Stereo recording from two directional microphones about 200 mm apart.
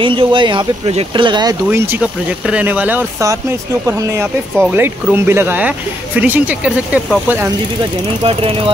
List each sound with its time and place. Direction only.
0.0 s speech: 25° right (ahead or behind); by 7.4 s 10° right (ahead or behind)
8.3 s speech: 30° right (ahead or behind)